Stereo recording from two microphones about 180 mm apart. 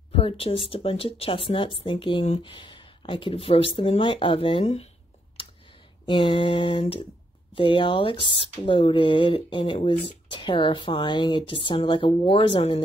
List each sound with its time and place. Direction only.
0.1 s speech: 30° left (ahead or behind)
6.0 s speech: 25° left (ahead or behind)